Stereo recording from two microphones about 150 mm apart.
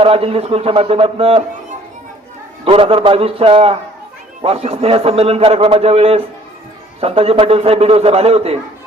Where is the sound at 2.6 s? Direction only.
35° right (ahead or behind).